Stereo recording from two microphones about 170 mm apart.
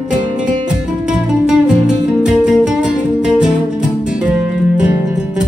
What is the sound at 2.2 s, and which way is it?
Music, 5° right (ahead or behind).